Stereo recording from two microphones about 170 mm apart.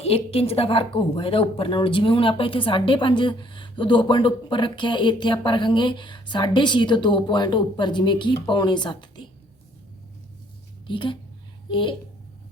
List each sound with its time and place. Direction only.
0.0 s a woman's voice: 35° left (ahead or behind)
10.8 s a woman's voice: 30° left (ahead or behind)